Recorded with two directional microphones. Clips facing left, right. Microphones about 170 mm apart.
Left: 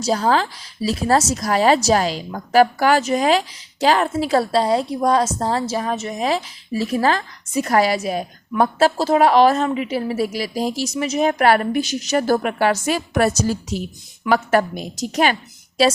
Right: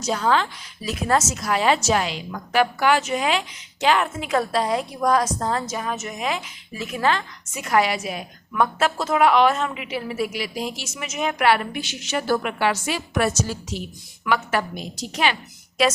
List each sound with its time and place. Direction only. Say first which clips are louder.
0.0 s a woman's voice: left 3 dB; 35° left (ahead or behind)
15.8 s speech: left 4 dB; 30° left (ahead or behind)